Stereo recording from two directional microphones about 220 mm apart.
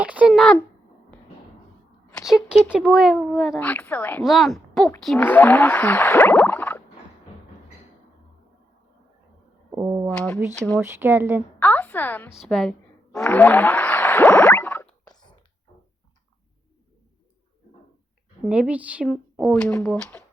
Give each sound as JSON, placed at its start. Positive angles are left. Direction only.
{"t": 0.0, "sound": "a child's voice", "side_deg": -5}
{"t": 2.3, "sound": "speech", "side_deg": 0}
{"t": 9.7, "sound": "a sound", "side_deg": -15}
{"t": 10.1, "sound": "speech", "side_deg": 5}
{"t": 10.8, "sound": "speech", "side_deg": -10}
{"t": 11.6, "sound": "speech", "side_deg": 10}
{"t": 13.1, "sound": "a sound", "side_deg": 5}
{"t": 15.1, "sound": "a sound", "side_deg": 20}
{"t": 18.4, "sound": "speech", "side_deg": -5}
{"t": 19.0, "sound": "speech", "side_deg": 5}